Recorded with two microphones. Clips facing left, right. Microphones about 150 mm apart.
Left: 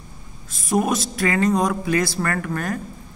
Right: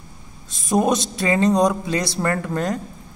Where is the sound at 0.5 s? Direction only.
20° right (ahead or behind).